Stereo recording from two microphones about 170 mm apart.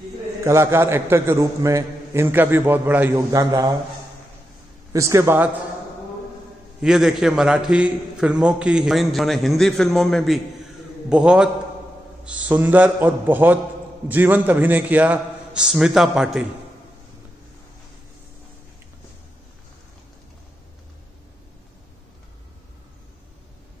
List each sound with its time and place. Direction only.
0.4 s a man's voice: 15° right (ahead or behind)
4.9 s a man's voice: 15° right (ahead or behind)
6.8 s a man's voice: 5° right (ahead or behind)